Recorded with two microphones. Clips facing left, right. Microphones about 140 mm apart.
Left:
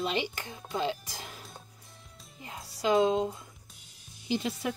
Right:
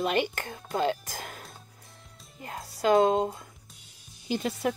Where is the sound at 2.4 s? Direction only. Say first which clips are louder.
Right 4 dB; 55° right (ahead or behind).